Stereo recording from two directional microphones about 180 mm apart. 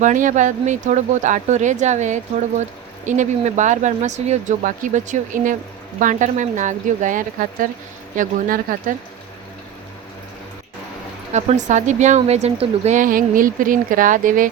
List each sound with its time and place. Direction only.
0.0 s speech: 45° right (ahead or behind)
11.3 s speech: 40° right (ahead or behind)